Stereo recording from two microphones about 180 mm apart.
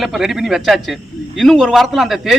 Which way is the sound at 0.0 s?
Centre (ahead or behind).